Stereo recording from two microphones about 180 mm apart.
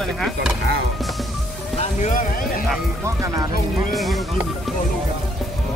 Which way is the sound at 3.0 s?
15° right (ahead or behind).